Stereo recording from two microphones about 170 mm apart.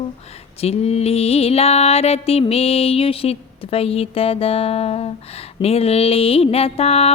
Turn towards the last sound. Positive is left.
turn(degrees=35)  # may be behind; listen again after turning